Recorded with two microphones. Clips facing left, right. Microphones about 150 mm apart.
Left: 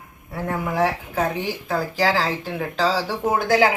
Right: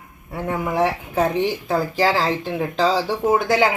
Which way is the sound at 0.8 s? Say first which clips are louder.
Right 2 dB; 25° right (ahead or behind).